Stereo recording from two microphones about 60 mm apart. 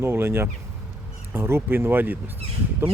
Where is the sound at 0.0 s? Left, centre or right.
Right.